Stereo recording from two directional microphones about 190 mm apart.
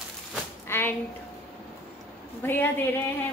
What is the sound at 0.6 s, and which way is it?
Speech, 10° left (ahead or behind).